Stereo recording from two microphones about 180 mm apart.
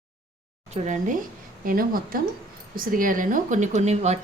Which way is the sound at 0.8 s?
45° right (ahead or behind).